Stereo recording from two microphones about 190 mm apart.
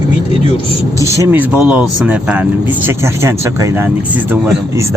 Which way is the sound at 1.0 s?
15° right (ahead or behind).